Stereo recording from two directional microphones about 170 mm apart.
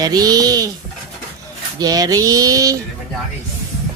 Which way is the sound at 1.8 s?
20° right (ahead or behind).